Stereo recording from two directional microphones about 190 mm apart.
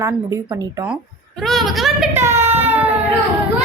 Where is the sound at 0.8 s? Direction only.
Centre (ahead or behind).